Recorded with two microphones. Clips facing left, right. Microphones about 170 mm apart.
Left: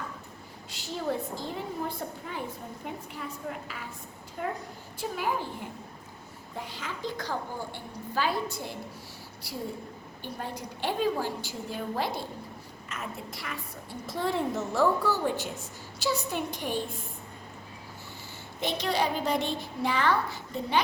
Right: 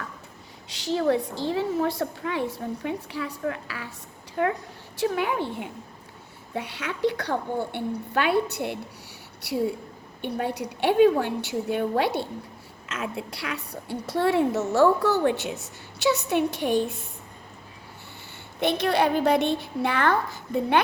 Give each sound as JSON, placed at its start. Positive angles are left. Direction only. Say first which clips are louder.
{"t": 0.7, "sound": "a woman's voice", "louder": "right 9 dB", "side_deg": -85}
{"t": 4.9, "sound": "a woman's voice", "louder": "right 6 dB", "side_deg": -70}
{"t": 18.6, "sound": "a woman's voice", "louder": "right 6 dB", "side_deg": -60}